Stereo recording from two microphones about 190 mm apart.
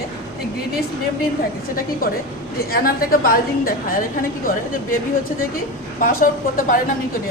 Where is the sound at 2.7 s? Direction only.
50° left (ahead or behind).